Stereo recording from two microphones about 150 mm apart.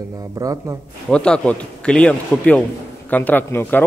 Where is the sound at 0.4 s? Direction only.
25° right (ahead or behind).